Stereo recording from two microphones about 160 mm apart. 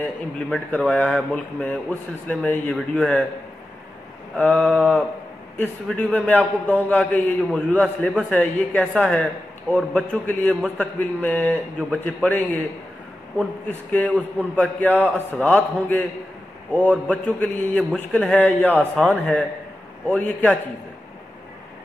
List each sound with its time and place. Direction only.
0.0 s a man's voice: 10° left (ahead or behind)
4.4 s a man's voice: 10° left (ahead or behind)
13.7 s a man's voice: 10° left (ahead or behind)